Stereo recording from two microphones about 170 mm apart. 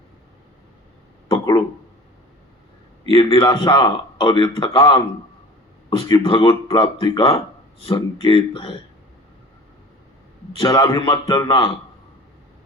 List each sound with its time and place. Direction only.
3.1 s a man's voice: 30° left (ahead or behind)
6.1 s speech: 30° left (ahead or behind)
10.6 s a man's voice: 30° left (ahead or behind)